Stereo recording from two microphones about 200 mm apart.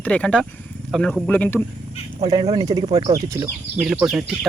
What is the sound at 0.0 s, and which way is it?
Speech, 5° left (ahead or behind).